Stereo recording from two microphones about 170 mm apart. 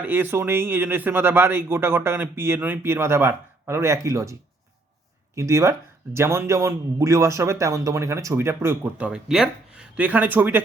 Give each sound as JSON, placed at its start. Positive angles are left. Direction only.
{"t": 0.0, "sound": "speech", "side_deg": -10}